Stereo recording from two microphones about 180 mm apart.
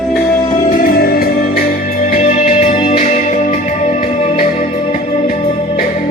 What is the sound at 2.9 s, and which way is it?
Music, 45° left (ahead or behind).